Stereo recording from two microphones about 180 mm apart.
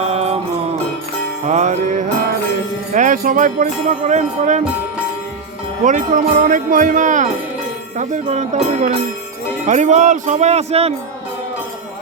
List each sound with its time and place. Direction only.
0.1 s music: 35° right (ahead or behind)
1.5 s speech: 40° right (ahead or behind)
2.9 s jingle bell: 45° right (ahead or behind)
5.8 s jingle bell: 45° right (ahead or behind)
9.6 s speech: 40° right (ahead or behind)